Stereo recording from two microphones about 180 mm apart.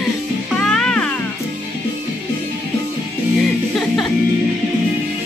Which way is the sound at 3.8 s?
Centre (ahead or behind).